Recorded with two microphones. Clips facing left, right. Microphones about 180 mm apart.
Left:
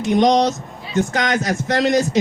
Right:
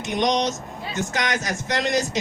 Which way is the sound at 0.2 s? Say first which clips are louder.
Left 5 dB; 55° left (ahead or behind).